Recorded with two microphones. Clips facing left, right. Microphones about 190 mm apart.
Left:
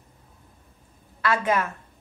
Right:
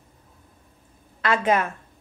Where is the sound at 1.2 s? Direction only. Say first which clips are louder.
Right 2 dB; 20° right (ahead or behind).